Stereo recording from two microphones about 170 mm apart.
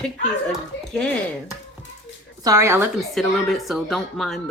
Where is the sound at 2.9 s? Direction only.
Centre (ahead or behind).